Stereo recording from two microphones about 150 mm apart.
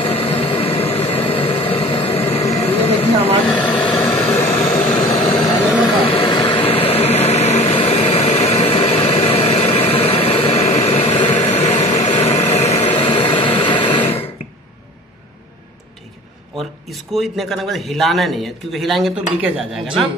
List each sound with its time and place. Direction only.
0.0 s a sound: 40° left (ahead or behind)
3.4 s vehicle: 10° left (ahead or behind)
6.0 s vehicle: 35° left (ahead or behind)
16.5 s speech: centre (ahead or behind)